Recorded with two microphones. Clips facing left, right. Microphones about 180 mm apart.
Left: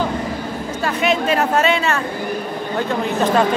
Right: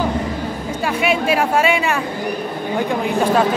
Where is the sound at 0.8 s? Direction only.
10° right (ahead or behind).